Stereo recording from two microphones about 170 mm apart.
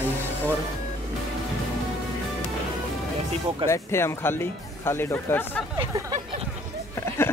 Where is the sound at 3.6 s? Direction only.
15° left (ahead or behind).